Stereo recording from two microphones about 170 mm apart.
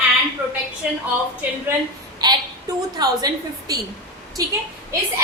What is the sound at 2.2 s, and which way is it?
A woman's voice, 25° right (ahead or behind).